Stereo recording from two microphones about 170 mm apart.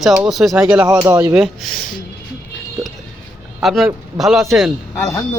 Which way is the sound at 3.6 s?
Centre (ahead or behind).